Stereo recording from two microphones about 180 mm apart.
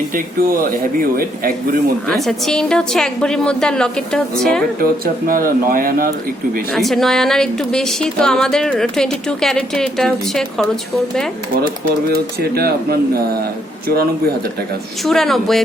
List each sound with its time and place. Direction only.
0.1 s speech: 50° right (ahead or behind)
2.0 s speech: centre (ahead or behind)
4.8 s speech: 50° right (ahead or behind)
6.7 s speech: centre (ahead or behind)
12.1 s speech: 60° right (ahead or behind)
15.0 s speech: centre (ahead or behind)